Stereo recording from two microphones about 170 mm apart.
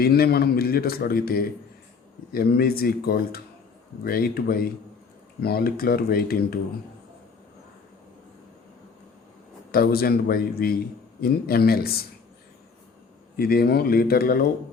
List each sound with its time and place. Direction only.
0.0 s speech: 65° left (ahead or behind)
9.7 s speech: 60° left (ahead or behind)
13.3 s speech: 60° left (ahead or behind)